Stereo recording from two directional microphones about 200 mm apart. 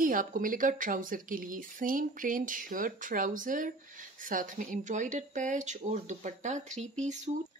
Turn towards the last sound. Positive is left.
turn(degrees=-35)  # may be behind; listen again after turning